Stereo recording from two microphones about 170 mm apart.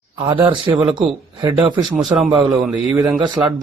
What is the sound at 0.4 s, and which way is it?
Speech, 30° right (ahead or behind).